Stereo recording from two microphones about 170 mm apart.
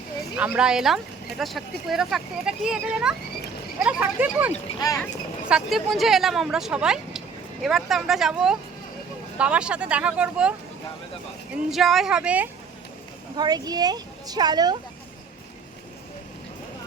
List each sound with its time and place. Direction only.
0.3 s speech: 10° right (ahead or behind)
11.5 s speech: centre (ahead or behind)
13.3 s a woman's voice: 25° right (ahead or behind)